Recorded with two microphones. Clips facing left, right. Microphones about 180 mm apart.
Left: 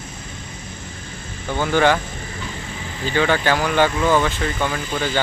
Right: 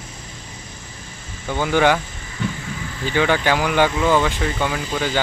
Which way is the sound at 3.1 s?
15° right (ahead or behind).